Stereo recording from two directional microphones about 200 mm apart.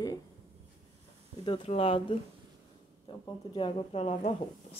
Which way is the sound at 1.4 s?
25° left (ahead or behind).